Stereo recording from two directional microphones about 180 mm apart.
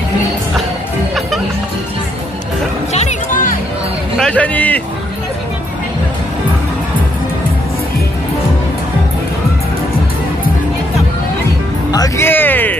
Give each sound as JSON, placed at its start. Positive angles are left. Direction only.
{"t": 2.9, "sound": "music", "side_deg": 40}
{"t": 4.2, "sound": "speech", "side_deg": 5}
{"t": 11.9, "sound": "speech", "side_deg": 15}